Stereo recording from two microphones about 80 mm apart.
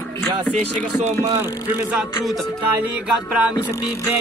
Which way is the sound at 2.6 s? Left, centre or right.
Centre.